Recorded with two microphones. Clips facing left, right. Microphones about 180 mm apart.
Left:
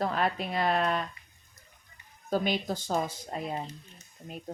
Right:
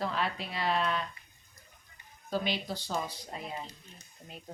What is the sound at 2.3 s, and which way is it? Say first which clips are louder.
A woman's voice: left 4 dB; 50° left (ahead or behind).